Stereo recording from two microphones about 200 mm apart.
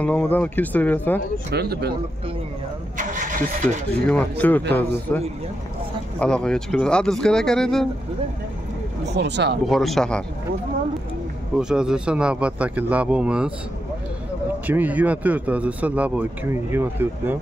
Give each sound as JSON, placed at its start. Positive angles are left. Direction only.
{"t": 0.0, "sound": "speech", "side_deg": 5}
{"t": 1.5, "sound": "speech", "side_deg": -55}
{"t": 3.0, "sound": "speech", "side_deg": -40}
{"t": 4.1, "sound": "speech", "side_deg": 10}
{"t": 9.1, "sound": "speech", "side_deg": -60}
{"t": 9.7, "sound": "speech", "side_deg": 0}
{"t": 11.5, "sound": "speech", "side_deg": -5}
{"t": 14.7, "sound": "speech", "side_deg": -10}